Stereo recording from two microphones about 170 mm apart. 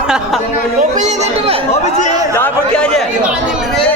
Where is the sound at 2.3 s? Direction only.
10° left (ahead or behind).